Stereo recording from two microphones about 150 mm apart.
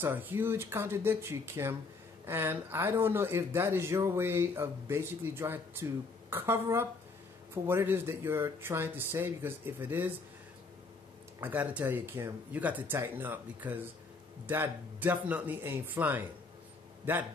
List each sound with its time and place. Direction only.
0.0 s speech: 15° right (ahead or behind)
11.3 s speech: 10° right (ahead or behind)